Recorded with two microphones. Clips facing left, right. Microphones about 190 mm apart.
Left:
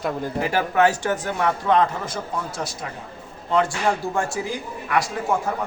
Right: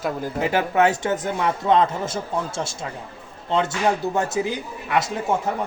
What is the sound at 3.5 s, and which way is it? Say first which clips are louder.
A man's voice: even; 25° right (ahead or behind).